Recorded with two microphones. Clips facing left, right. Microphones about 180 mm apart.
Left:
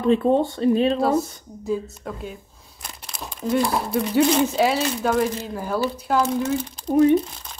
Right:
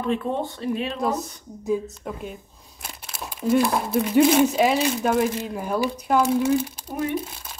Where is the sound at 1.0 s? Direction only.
15° right (ahead or behind).